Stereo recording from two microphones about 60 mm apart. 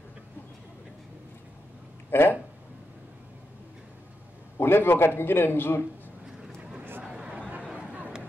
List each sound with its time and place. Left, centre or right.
2.0 s speech: left
4.6 s a man's voice: left
7.1 s a sound: centre